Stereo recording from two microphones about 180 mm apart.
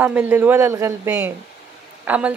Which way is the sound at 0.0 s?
10° right (ahead or behind).